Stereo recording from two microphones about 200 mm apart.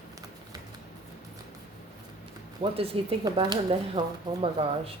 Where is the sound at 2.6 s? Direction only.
30° right (ahead or behind).